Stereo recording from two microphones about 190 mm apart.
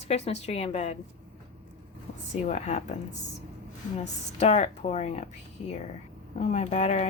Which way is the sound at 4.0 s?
35° left (ahead or behind).